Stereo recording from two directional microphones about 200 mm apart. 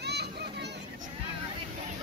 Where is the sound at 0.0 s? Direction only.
55° right (ahead or behind).